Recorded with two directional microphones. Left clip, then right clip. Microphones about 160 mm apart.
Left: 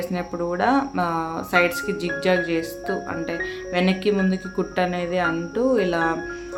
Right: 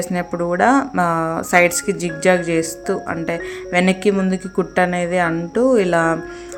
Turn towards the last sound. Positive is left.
turn(degrees=-40)  # may be behind; listen again after turning